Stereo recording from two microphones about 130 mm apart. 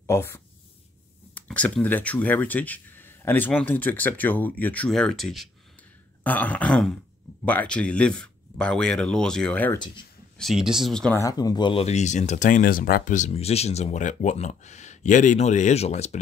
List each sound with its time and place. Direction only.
0.0 s speech: 20° left (ahead or behind)
1.3 s speech: 10° left (ahead or behind)
6.2 s speech: 15° left (ahead or behind)
11.1 s speech: 30° left (ahead or behind); by 13.3 s 80° left
13.3 s speech: 50° left (ahead or behind)